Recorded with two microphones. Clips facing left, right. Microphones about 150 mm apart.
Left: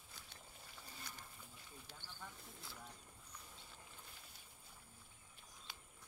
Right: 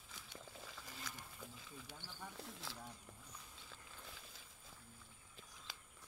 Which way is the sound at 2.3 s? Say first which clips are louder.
Right 6 dB; 90° right.